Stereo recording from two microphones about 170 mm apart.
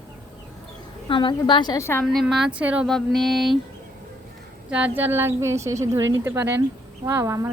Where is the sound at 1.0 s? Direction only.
30° left (ahead or behind).